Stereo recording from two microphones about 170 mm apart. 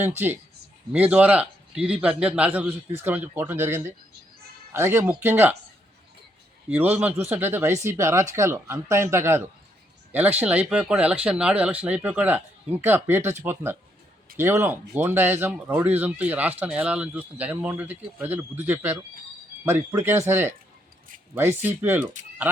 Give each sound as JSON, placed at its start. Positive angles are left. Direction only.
{"t": 0.9, "sound": "speech", "side_deg": -10}
{"t": 6.7, "sound": "speech", "side_deg": -10}